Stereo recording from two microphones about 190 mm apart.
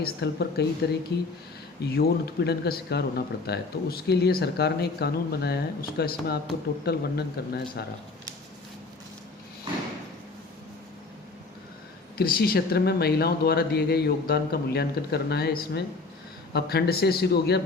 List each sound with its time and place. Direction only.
0.0 s speech: 60° left (ahead or behind)
1.8 s speech: 55° left (ahead or behind)
12.1 s speech: 55° left (ahead or behind)